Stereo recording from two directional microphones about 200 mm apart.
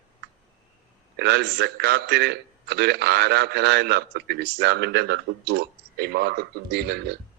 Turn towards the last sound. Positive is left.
turn(degrees=-55)  # may be behind; listen again after turning